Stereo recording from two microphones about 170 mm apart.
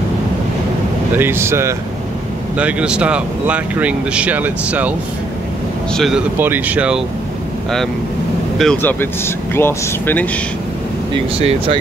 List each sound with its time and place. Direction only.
1.1 s speech: 15° right (ahead or behind)
5.9 s speech: centre (ahead or behind)
6.3 s speech: 10° right (ahead or behind)
8.5 s speech: 5° left (ahead or behind)
11.1 s speech: 35° right (ahead or behind)